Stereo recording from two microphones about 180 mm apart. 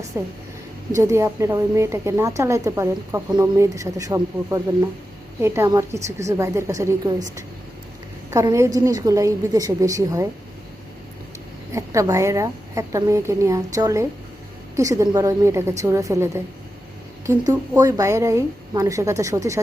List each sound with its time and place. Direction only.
0.1 s a woman's voice: 15° right (ahead or behind)
8.3 s a woman's voice: 15° right (ahead or behind)
11.7 s a woman's voice: 15° right (ahead or behind)